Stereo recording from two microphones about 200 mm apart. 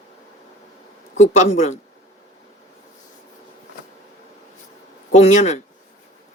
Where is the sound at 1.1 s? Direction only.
35° left (ahead or behind).